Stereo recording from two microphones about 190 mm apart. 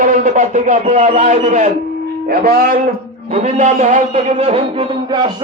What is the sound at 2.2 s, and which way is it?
Speech, 50° right (ahead or behind).